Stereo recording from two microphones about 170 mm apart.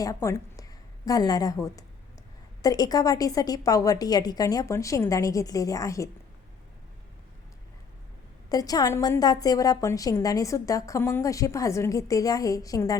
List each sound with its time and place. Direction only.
0.0 s a woman's voice: 20° left (ahead or behind)
8.4 s a woman's voice: 20° left (ahead or behind)